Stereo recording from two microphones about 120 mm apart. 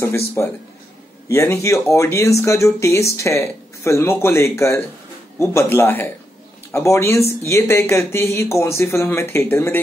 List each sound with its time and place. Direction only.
0.0 s speech: 20° left (ahead or behind)